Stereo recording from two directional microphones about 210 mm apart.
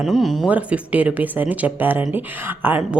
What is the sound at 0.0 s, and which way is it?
A woman's voice, centre (ahead or behind).